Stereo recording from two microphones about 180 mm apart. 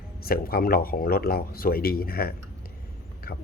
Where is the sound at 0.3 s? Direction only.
55° left (ahead or behind).